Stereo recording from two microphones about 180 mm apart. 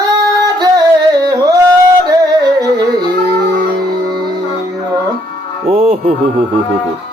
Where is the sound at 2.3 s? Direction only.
20° right (ahead or behind).